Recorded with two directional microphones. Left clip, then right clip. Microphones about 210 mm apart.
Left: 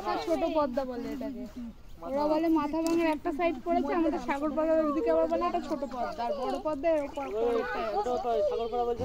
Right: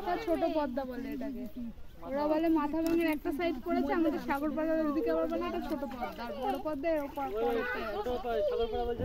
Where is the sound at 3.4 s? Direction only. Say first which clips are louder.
Left 5 dB; 35° right (ahead or behind).